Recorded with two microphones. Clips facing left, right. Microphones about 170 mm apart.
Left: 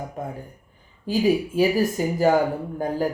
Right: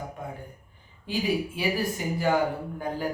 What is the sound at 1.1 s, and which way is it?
A man's voice, 40° left (ahead or behind).